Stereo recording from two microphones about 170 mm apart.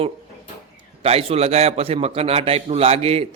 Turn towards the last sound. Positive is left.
turn(degrees=-35)  # may be behind; listen again after turning